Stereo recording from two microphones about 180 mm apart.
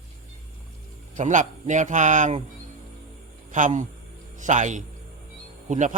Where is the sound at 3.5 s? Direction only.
45° right (ahead or behind).